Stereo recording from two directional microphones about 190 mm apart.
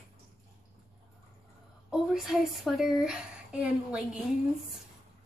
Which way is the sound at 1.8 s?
Centre (ahead or behind).